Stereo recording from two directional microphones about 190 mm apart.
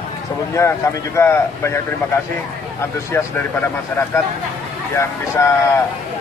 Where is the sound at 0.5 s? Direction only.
15° left (ahead or behind).